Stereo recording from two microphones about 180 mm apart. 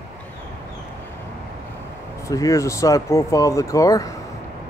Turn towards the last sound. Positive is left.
turn(degrees=20)  # may be behind; listen again after turning